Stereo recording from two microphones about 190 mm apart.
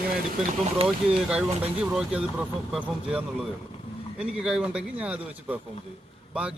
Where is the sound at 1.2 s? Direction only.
5° right (ahead or behind).